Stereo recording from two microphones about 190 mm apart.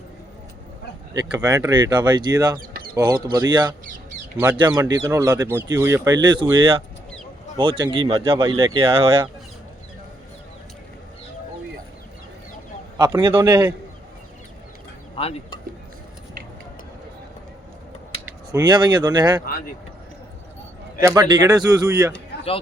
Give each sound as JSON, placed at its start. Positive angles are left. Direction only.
{"t": 1.4, "sound": "speech", "side_deg": -20}
{"t": 2.6, "sound": "bird", "side_deg": -50}
{"t": 2.9, "sound": "speech", "side_deg": -20}
{"t": 13.0, "sound": "speech", "side_deg": -20}
{"t": 15.1, "sound": "speech", "side_deg": 30}
{"t": 18.5, "sound": "speech", "side_deg": -20}
{"t": 21.0, "sound": "speech", "side_deg": -20}